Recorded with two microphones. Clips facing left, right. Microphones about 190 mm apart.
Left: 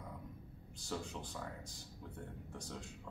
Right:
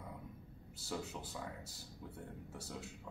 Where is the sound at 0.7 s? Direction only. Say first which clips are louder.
Even; 5° right (ahead or behind).